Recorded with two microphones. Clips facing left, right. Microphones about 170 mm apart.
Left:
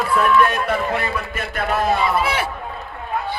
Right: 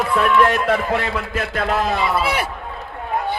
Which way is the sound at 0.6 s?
90° right.